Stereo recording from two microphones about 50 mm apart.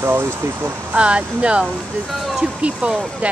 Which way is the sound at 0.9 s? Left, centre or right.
Right.